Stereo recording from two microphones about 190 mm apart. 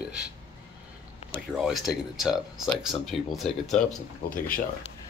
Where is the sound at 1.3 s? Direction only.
Centre (ahead or behind).